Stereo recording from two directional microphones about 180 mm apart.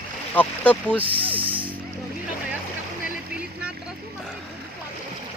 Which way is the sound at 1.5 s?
10° right (ahead or behind).